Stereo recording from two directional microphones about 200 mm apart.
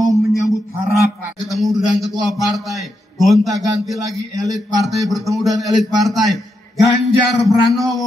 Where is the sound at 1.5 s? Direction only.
Centre (ahead or behind).